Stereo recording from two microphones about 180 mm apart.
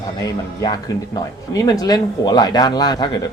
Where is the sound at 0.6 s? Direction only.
20° left (ahead or behind).